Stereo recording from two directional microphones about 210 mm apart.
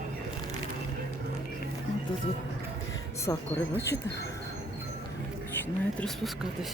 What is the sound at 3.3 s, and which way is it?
Speech, 15° left (ahead or behind).